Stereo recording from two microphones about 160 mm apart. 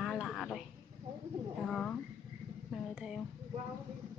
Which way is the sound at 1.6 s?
5° left (ahead or behind).